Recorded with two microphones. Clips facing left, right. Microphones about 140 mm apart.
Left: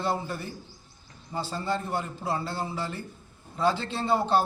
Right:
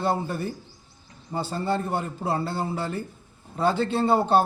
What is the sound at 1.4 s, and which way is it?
A man's voice, 55° right (ahead or behind).